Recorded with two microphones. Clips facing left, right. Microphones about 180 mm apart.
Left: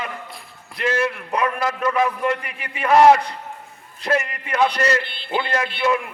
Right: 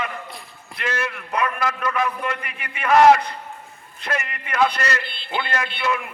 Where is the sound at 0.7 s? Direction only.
35° left (ahead or behind).